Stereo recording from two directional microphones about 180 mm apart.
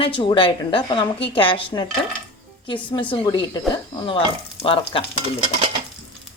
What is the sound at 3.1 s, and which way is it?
A woman's voice, 25° left (ahead or behind).